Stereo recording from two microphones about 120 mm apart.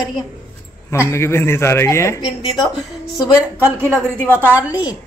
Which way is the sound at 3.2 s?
10° right (ahead or behind).